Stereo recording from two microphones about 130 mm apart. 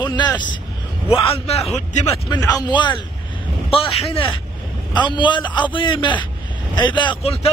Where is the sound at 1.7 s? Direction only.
60° left (ahead or behind).